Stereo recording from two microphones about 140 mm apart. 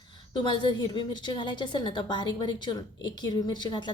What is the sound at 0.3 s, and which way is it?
A woman's voice, 35° left (ahead or behind).